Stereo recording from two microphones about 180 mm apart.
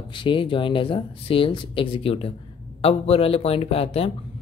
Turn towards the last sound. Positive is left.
turn(degrees=35)  # may be behind; listen again after turning